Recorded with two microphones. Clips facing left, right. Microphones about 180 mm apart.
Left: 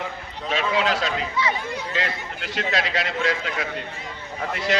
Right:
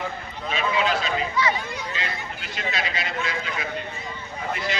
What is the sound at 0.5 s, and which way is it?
A man's voice, 85° left.